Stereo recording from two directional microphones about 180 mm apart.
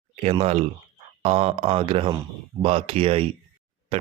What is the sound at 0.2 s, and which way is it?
Speech, 35° right (ahead or behind).